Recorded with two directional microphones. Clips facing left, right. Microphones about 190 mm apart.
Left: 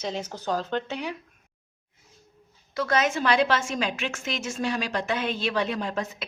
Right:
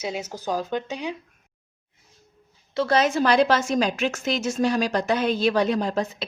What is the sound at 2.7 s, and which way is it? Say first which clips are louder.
A woman's voice: right 4 dB; 30° right (ahead or behind).